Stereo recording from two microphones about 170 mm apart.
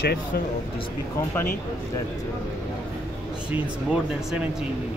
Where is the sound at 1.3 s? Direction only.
15° left (ahead or behind).